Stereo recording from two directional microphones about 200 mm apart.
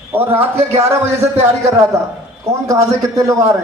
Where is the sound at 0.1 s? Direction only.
10° right (ahead or behind).